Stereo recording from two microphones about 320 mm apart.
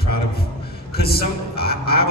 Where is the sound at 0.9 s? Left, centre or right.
Left.